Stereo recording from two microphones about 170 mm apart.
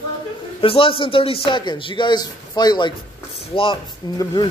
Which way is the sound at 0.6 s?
30° left (ahead or behind).